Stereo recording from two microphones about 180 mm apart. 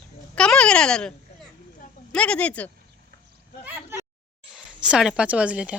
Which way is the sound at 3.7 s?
10° right (ahead or behind).